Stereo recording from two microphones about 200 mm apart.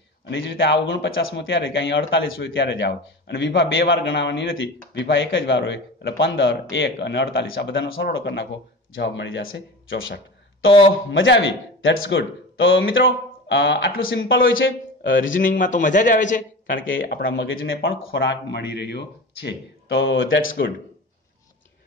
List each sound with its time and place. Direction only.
0.3 s speech: 70° left (ahead or behind)
11.1 s speech: 65° left (ahead or behind)
15.3 s a man's voice: 40° left (ahead or behind)
17.1 s speech: 70° left (ahead or behind)